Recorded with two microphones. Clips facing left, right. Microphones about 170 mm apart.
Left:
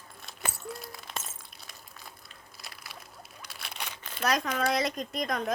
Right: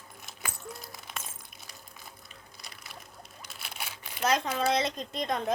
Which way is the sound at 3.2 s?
Centre (ahead or behind).